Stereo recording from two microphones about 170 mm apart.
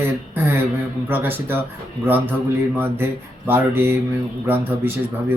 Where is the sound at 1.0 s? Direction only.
10° right (ahead or behind).